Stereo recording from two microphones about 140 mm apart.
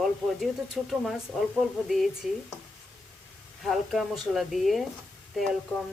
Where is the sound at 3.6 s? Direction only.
Centre (ahead or behind).